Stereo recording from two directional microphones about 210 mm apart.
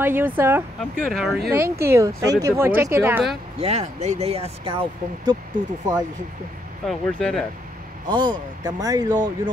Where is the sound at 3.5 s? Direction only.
30° right (ahead or behind).